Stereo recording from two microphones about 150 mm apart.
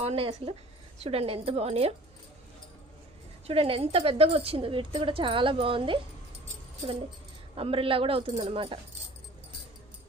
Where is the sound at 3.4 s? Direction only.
40° right (ahead or behind).